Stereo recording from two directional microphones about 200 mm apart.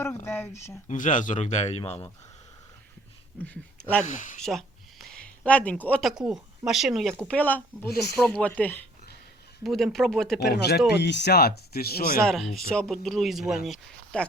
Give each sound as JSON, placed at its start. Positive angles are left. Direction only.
{"t": 0.3, "sound": "speech", "side_deg": 10}
{"t": 0.9, "sound": "a man's voice", "side_deg": 40}
{"t": 3.4, "sound": "speech", "side_deg": 5}
{"t": 4.0, "sound": "a man's voice", "side_deg": 40}
{"t": 4.4, "sound": "speech", "side_deg": 0}
{"t": 10.4, "sound": "speech", "side_deg": 50}
{"t": 12.2, "sound": "speech", "side_deg": 0}